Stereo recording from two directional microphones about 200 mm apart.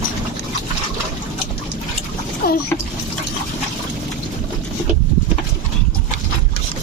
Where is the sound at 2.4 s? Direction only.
45° left (ahead or behind).